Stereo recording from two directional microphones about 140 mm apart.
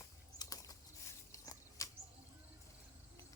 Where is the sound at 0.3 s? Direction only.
25° left (ahead or behind).